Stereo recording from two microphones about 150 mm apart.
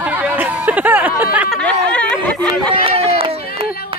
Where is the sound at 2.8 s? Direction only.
40° right (ahead or behind).